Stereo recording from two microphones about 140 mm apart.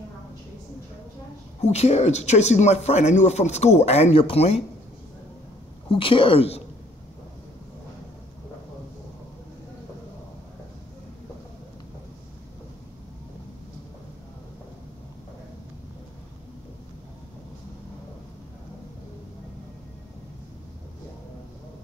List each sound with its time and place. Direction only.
1.6 s speech: 50° left (ahead or behind)
5.9 s speech: 40° left (ahead or behind)